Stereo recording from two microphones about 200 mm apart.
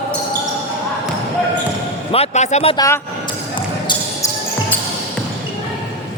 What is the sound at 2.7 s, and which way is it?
Speech, 15° left (ahead or behind).